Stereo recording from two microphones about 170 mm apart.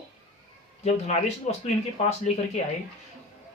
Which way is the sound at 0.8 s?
40° left (ahead or behind).